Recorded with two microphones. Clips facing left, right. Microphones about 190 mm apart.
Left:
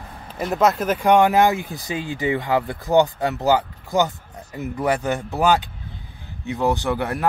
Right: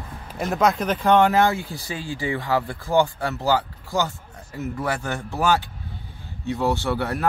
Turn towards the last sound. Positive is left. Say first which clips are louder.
# left 1 dB
turn(degrees=15)  # may be behind; listen again after turning